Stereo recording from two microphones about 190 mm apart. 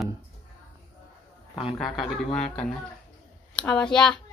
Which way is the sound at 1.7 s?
Centre (ahead or behind).